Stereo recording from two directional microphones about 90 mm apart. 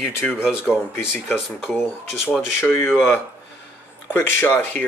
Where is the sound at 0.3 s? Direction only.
10° right (ahead or behind).